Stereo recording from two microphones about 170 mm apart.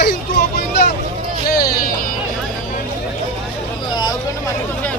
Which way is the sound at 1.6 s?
60° left (ahead or behind).